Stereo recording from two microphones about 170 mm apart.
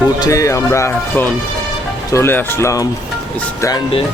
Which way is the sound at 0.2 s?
20° left (ahead or behind).